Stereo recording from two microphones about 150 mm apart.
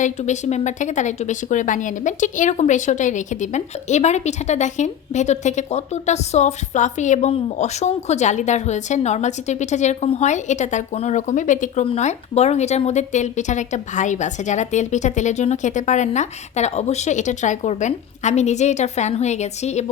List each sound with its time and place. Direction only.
0.0 s speech: 50° left (ahead or behind)